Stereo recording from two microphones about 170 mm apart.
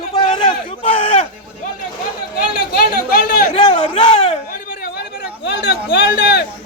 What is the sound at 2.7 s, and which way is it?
Chatter, 60° left (ahead or behind).